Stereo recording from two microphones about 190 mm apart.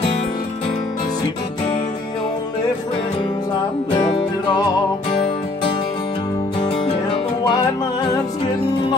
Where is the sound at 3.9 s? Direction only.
25° left (ahead or behind).